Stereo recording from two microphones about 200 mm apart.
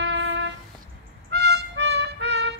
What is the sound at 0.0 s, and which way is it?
Music, 60° right (ahead or behind).